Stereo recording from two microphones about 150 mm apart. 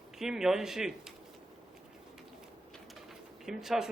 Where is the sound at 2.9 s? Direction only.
Centre (ahead or behind).